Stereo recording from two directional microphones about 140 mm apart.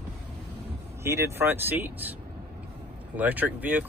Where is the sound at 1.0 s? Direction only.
20° right (ahead or behind).